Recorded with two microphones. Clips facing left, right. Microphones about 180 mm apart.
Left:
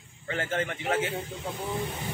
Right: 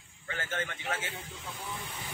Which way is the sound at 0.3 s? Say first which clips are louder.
Left 7 dB; 30° left (ahead or behind).